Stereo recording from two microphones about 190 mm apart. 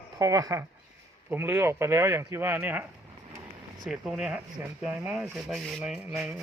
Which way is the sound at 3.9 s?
5° right (ahead or behind).